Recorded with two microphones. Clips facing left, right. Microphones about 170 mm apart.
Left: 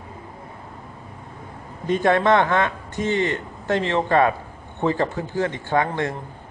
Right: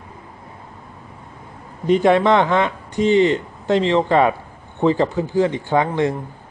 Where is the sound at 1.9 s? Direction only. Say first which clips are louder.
Right 4 dB; 15° right (ahead or behind).